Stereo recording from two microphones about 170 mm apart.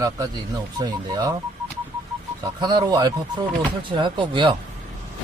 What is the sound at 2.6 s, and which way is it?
Speech, 25° right (ahead or behind).